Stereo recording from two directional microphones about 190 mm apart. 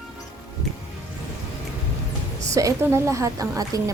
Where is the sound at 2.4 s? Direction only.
15° right (ahead or behind).